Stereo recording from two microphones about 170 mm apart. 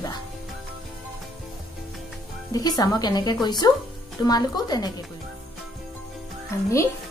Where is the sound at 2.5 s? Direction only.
20° left (ahead or behind).